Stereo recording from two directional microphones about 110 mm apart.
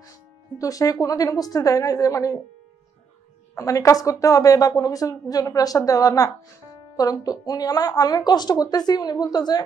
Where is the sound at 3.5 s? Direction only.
30° left (ahead or behind).